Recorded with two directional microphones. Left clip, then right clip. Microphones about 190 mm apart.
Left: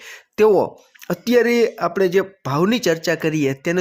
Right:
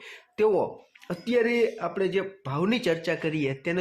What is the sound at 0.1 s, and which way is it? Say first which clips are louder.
Speech: left 9 dB; 40° left (ahead or behind).